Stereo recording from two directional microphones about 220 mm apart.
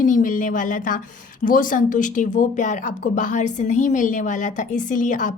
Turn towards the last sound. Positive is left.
turn(degrees=35)  # may be behind; listen again after turning